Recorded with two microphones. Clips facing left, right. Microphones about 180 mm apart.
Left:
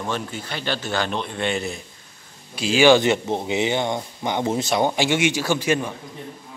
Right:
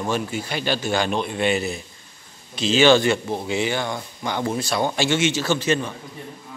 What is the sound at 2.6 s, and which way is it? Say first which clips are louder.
Speech: left 1 dB; 10° left (ahead or behind).